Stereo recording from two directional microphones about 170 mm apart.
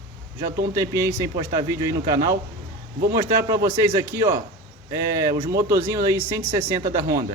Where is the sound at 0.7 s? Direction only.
15° right (ahead or behind).